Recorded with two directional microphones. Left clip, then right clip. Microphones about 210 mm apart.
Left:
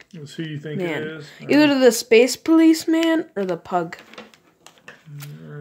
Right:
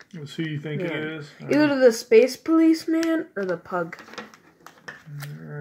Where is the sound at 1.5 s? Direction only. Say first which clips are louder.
Left 3 dB; 45° left (ahead or behind).